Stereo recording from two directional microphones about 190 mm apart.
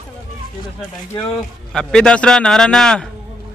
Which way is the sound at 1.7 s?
5° left (ahead or behind).